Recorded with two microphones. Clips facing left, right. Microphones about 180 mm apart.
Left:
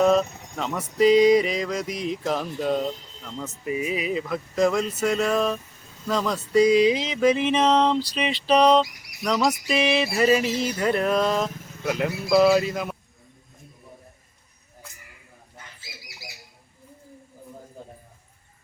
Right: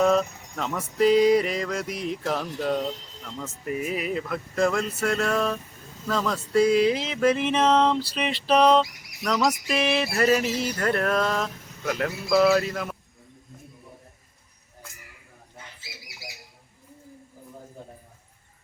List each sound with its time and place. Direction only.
0.0 s speech: centre (ahead or behind)
1.2 s music: 15° left (ahead or behind)
1.7 s music: 5° right (ahead or behind)
2.2 s music: 5° left (ahead or behind)
6.1 s a sound: centre (ahead or behind)
11.9 s music: 15° left (ahead or behind)